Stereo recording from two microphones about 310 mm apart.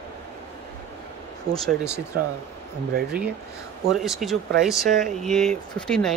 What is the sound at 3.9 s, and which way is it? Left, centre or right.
Speech, centre.